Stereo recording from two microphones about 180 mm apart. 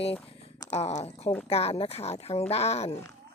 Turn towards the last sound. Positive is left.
turn(degrees=35)  # may be behind; listen again after turning